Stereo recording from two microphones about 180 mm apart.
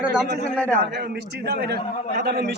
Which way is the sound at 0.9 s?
65° right (ahead or behind).